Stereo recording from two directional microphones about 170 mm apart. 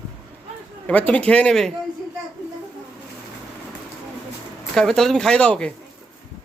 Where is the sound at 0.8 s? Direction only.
10° left (ahead or behind).